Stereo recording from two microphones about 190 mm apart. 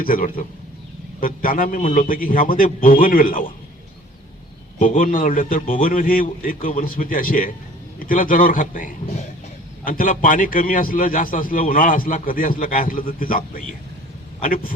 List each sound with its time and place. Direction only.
0.0 s a man's voice: 50° left (ahead or behind)
4.8 s a man's voice: 45° left (ahead or behind)